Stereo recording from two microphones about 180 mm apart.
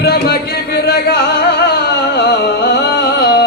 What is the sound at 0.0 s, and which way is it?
Music, 60° left (ahead or behind).